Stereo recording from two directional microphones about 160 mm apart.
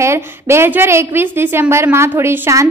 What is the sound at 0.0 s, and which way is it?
A woman's voice, 15° right (ahead or behind).